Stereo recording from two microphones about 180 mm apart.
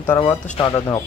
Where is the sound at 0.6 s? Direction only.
20° left (ahead or behind).